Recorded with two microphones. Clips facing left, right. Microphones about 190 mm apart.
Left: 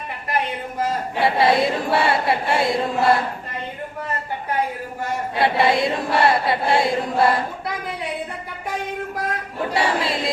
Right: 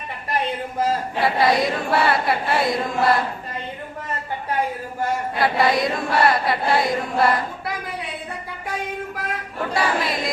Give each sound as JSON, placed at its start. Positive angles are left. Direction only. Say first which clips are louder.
{"t": 1.2, "sound": "chant", "louder": "left 2 dB", "side_deg": 30}
{"t": 5.4, "sound": "chant", "louder": "left 2 dB", "side_deg": 25}
{"t": 9.7, "sound": "chant", "louder": "left 1 dB", "side_deg": 30}